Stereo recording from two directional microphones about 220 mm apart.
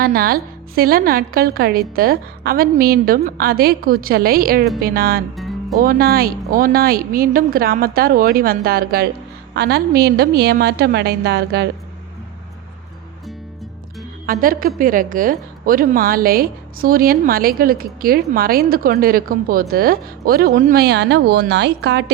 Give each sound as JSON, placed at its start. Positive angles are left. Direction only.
{"t": 0.0, "sound": "a woman's voice", "side_deg": -45}
{"t": 14.3, "sound": "a woman's voice", "side_deg": -40}